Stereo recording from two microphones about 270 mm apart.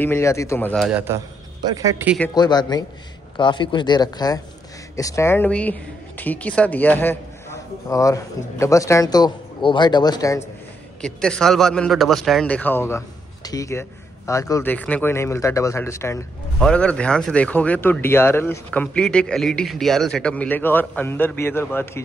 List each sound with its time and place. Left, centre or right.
0.0 s a man's voice: centre
2.1 s a man's voice: centre
11.0 s a man's voice: centre